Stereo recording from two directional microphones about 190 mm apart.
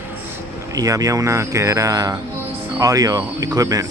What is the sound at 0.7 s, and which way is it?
Speech, 15° right (ahead or behind).